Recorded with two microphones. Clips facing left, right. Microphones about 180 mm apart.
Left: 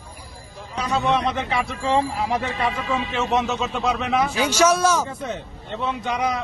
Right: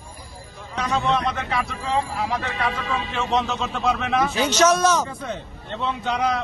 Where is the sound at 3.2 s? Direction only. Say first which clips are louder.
Even; 20° left (ahead or behind).